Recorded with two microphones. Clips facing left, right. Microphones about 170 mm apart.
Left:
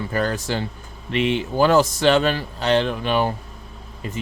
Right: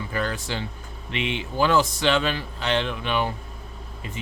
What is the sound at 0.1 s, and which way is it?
Speech, 45° left (ahead or behind).